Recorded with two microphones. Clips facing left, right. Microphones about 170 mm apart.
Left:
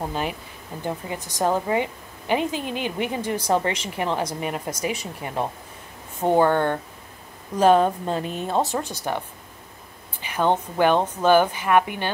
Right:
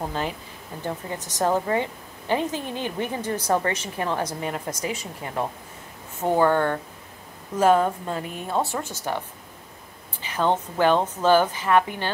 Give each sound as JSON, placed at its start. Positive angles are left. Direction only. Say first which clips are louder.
{"t": 0.1, "sound": "a woman's voice", "louder": "left 1 dB", "side_deg": 15}
{"t": 10.2, "sound": "a woman's voice", "louder": "left 1 dB", "side_deg": 15}